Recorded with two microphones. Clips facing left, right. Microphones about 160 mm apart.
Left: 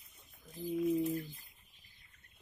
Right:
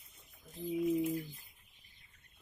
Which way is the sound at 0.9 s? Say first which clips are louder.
Even; 15° right (ahead or behind).